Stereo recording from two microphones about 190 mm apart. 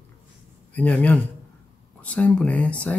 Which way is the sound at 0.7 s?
10° left (ahead or behind).